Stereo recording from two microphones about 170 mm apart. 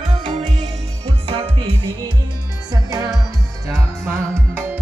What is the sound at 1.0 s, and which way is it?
Music, 35° right (ahead or behind).